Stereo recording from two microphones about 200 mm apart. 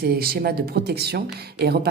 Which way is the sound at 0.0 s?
50° right (ahead or behind).